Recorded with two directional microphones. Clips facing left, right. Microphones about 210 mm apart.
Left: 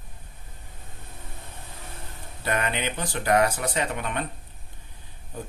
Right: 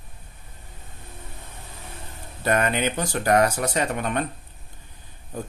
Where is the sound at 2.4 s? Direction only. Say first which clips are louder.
Right 5 dB; 45° right (ahead or behind).